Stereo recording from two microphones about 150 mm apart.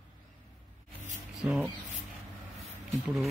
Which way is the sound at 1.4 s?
5° right (ahead or behind).